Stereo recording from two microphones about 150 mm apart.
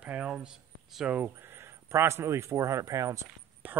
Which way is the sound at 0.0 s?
5° right (ahead or behind).